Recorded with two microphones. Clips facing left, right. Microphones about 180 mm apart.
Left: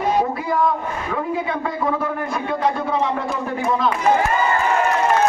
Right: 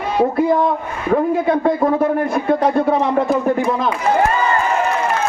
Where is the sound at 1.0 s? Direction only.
45° right (ahead or behind).